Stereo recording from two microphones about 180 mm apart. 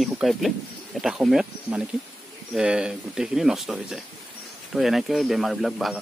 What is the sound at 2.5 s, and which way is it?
Speech, 5° right (ahead or behind).